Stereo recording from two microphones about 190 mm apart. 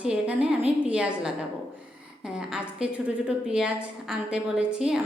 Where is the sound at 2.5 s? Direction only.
5° right (ahead or behind).